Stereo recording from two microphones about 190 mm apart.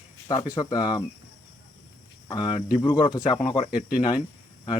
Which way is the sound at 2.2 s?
25° left (ahead or behind).